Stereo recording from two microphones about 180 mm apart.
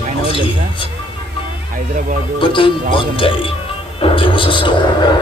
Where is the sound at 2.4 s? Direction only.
30° left (ahead or behind).